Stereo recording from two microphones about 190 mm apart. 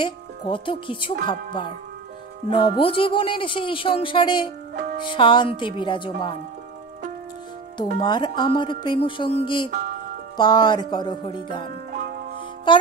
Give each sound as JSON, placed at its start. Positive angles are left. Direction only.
{"t": 0.0, "sound": "speech", "side_deg": 25}
{"t": 7.7, "sound": "speech", "side_deg": 25}
{"t": 11.9, "sound": "music", "side_deg": -45}
{"t": 12.7, "sound": "speech", "side_deg": 25}